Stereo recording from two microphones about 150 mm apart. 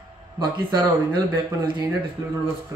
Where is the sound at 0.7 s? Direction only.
30° right (ahead or behind).